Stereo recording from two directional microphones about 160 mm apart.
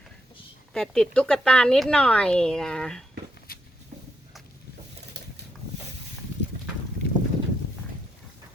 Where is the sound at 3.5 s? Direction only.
70° left (ahead or behind).